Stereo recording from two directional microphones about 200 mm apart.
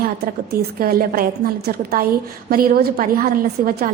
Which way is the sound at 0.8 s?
50° right (ahead or behind).